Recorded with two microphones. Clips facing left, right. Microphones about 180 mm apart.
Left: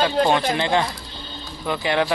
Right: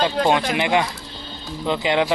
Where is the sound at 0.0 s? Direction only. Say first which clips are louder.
Even; 15° right (ahead or behind).